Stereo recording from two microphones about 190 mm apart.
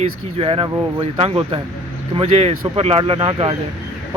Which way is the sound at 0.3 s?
30° right (ahead or behind).